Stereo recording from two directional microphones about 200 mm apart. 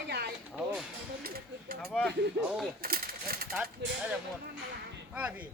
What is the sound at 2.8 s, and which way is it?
Speech, 50° right (ahead or behind).